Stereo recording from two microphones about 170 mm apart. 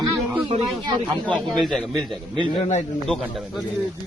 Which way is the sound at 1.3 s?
5° left (ahead or behind).